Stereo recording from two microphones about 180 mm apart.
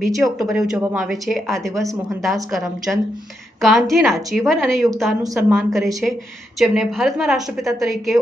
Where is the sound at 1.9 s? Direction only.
20° right (ahead or behind).